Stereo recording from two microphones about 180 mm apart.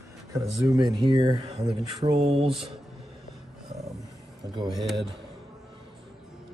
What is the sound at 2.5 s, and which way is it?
Speech, centre (ahead or behind).